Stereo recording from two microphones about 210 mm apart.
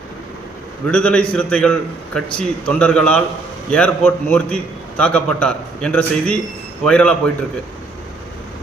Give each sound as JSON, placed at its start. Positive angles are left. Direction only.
{"t": 0.9, "sound": "a man's voice", "side_deg": 5}